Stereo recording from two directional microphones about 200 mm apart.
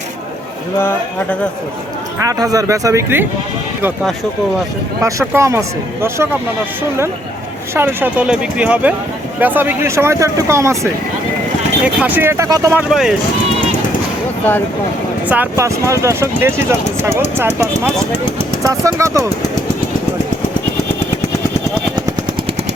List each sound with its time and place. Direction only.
0.8 s speech: 10° left (ahead or behind)
2.2 s speech: 15° right (ahead or behind)
5.0 s speech: 15° right (ahead or behind)
7.7 s speech: 10° right (ahead or behind)
11.9 s speech: 10° right (ahead or behind)
12.9 s speech: centre (ahead or behind)
15.3 s speech: 10° right (ahead or behind)